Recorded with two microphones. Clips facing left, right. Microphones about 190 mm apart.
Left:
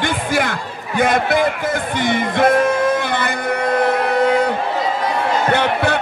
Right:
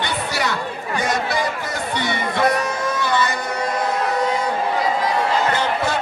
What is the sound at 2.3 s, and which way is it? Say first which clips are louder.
Music: left 6 dB; 50° left (ahead or behind).